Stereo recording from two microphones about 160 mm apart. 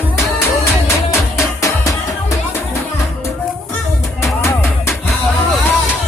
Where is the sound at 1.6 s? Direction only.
20° left (ahead or behind).